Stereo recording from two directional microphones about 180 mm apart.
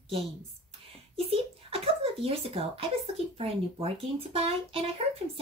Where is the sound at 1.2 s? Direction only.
30° right (ahead or behind).